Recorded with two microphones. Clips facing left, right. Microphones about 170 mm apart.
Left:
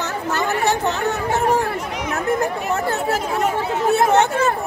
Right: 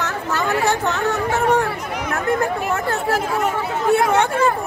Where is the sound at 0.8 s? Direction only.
35° left (ahead or behind).